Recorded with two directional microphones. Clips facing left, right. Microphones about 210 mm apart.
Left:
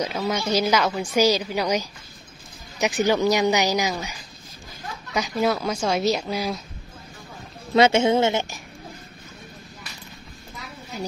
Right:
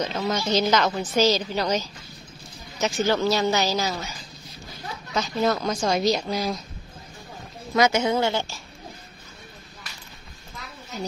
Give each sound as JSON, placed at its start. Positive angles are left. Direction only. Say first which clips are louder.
{"t": 0.0, "sound": "a woman's voice", "louder": "left 1 dB", "side_deg": 10}
{"t": 7.7, "sound": "speech", "louder": "left 4 dB", "side_deg": 25}
{"t": 10.9, "sound": "stir", "louder": "even", "side_deg": 10}